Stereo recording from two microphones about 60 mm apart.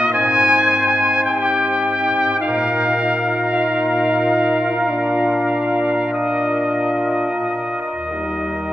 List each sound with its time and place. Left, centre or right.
0.0 s trumpet: centre
3.5 s trumpet: centre
5.1 s music: centre